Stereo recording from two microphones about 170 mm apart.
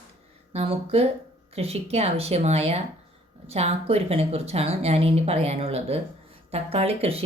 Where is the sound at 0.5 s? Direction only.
35° right (ahead or behind).